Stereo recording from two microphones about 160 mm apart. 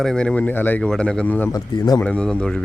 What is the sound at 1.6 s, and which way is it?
Speech, 25° left (ahead or behind).